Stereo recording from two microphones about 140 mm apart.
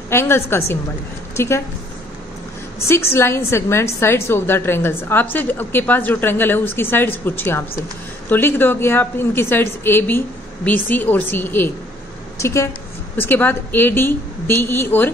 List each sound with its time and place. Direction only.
0.1 s a woman's voice: 20° left (ahead or behind)
2.9 s a woman's voice: 20° left (ahead or behind)